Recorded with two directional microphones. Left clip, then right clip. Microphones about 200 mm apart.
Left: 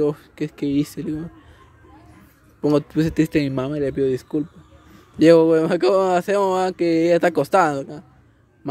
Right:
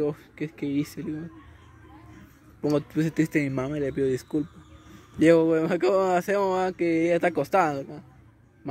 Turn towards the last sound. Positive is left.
turn(degrees=25)  # may be behind; listen again after turning